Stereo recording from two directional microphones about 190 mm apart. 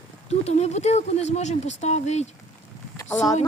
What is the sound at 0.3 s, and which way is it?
Speech, 35° left (ahead or behind).